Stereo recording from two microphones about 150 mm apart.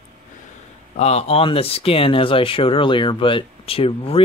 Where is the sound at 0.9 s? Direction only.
45° left (ahead or behind).